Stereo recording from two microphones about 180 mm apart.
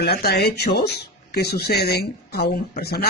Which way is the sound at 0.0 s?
60° left (ahead or behind).